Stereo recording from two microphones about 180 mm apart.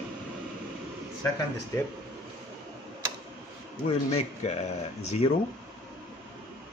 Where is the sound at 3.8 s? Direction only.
35° left (ahead or behind).